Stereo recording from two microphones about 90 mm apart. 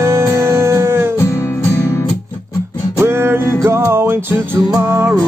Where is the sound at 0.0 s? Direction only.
30° right (ahead or behind).